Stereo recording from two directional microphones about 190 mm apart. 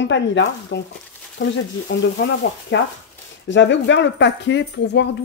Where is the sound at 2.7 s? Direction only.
85° left.